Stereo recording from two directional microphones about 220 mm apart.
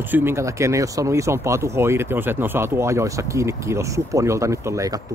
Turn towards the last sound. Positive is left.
turn(degrees=-15)  # may be behind; listen again after turning